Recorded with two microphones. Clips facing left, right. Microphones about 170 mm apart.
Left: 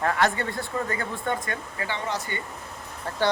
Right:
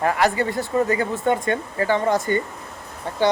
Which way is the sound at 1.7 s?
45° right (ahead or behind).